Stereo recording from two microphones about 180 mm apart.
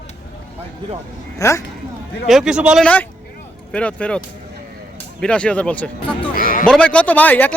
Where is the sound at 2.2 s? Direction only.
5° right (ahead or behind).